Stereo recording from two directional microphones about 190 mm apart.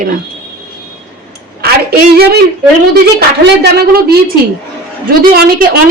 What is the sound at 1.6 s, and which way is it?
Speech, 55° right (ahead or behind).